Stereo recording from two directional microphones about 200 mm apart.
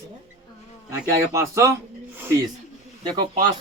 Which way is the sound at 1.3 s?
15° right (ahead or behind).